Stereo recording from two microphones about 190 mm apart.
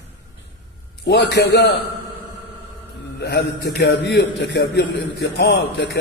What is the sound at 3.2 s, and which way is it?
Speech, 60° left (ahead or behind).